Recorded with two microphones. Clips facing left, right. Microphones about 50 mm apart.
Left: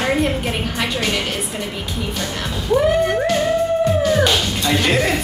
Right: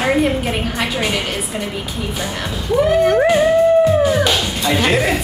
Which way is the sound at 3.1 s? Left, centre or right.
Centre.